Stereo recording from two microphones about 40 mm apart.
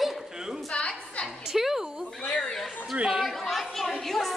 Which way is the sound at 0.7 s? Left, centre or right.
Left.